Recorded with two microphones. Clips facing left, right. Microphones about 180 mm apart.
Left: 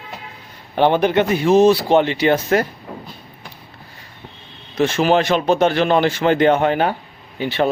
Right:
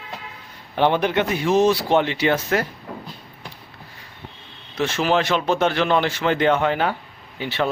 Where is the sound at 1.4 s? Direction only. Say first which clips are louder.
Left 5 dB; 35° left (ahead or behind).